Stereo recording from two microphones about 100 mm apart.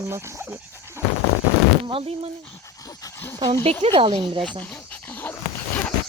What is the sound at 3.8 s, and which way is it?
Speech, 60° right (ahead or behind).